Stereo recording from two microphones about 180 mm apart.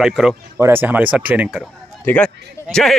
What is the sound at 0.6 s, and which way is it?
Speech, 10° right (ahead or behind).